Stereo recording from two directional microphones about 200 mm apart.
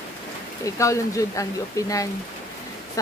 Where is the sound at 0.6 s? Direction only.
15° left (ahead or behind).